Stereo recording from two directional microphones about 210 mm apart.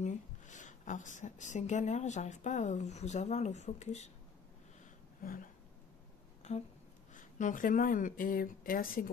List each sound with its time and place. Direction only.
0.0 s a woman's voice: 35° left (ahead or behind)
5.2 s speech: 40° left (ahead or behind)
6.5 s a sound: 30° left (ahead or behind)
7.2 s speech: 40° left (ahead or behind)